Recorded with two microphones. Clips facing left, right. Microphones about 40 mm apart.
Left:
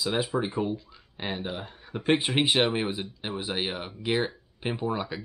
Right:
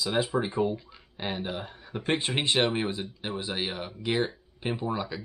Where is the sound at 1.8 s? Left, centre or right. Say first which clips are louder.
Left 5 dB; centre.